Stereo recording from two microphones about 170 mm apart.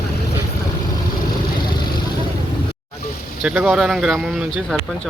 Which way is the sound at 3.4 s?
Centre (ahead or behind).